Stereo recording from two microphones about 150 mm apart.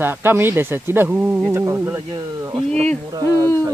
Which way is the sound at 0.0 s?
15° right (ahead or behind).